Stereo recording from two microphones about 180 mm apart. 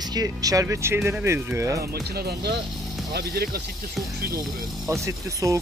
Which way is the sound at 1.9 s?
60° right (ahead or behind).